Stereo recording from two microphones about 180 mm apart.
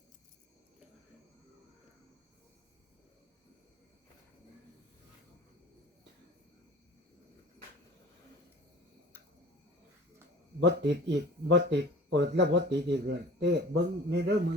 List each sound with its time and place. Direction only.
10.6 s speech: 70° right (ahead or behind)